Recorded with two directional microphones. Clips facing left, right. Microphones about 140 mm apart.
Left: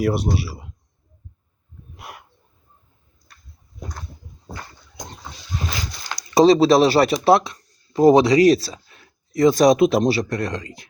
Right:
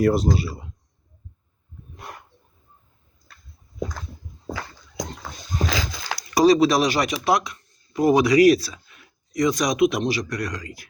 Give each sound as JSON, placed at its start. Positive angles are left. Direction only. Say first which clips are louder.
{"t": 0.0, "sound": "speech", "louder": "right 2 dB", "side_deg": 0}
{"t": 2.0, "sound": "dog", "louder": "even", "side_deg": 5}
{"t": 5.6, "sound": "a sound", "louder": "right 5 dB", "side_deg": -90}
{"t": 6.1, "sound": "speech", "louder": "left 3 dB", "side_deg": 25}